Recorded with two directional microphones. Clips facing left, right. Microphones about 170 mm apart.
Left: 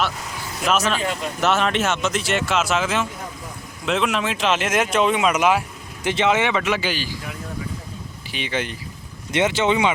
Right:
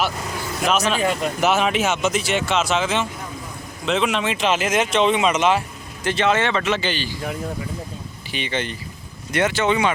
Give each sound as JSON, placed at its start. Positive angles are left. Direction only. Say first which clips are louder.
{"t": 0.7, "sound": "speech", "louder": "right 1 dB", "side_deg": 0}
{"t": 8.3, "sound": "speech", "louder": "even", "side_deg": 5}
{"t": 9.3, "sound": "speech", "louder": "even", "side_deg": 20}